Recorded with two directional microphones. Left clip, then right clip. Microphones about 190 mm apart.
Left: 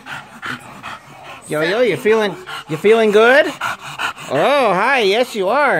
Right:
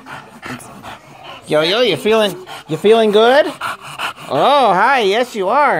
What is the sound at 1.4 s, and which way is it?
Speech, 15° right (ahead or behind).